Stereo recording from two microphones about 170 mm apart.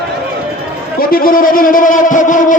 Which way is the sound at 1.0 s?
60° left (ahead or behind).